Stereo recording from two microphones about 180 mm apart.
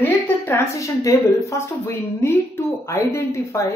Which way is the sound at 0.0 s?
15° left (ahead or behind).